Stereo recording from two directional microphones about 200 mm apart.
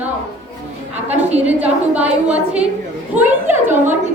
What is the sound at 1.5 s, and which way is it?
A woman's voice, 5° right (ahead or behind).